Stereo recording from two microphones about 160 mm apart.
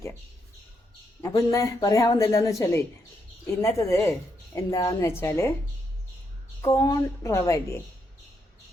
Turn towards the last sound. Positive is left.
turn(degrees=20)  # may be behind; listen again after turning